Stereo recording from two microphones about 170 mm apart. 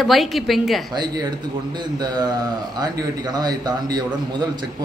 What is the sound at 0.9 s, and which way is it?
Speech, 25° right (ahead or behind).